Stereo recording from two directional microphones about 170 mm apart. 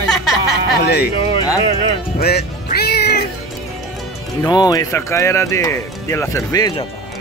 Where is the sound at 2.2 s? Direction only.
70° left (ahead or behind).